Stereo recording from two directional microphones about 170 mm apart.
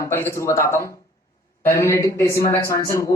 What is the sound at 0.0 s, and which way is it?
A man's voice, 15° left (ahead or behind).